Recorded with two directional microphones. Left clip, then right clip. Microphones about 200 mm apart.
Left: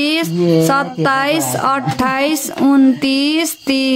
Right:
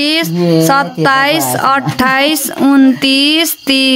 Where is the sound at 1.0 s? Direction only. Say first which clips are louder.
Right 5 dB; centre (ahead or behind).